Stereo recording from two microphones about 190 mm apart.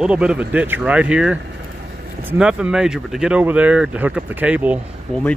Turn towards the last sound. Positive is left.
turn(degrees=5)  # may be behind; listen again after turning